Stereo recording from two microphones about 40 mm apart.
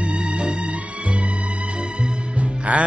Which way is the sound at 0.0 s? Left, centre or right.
Right.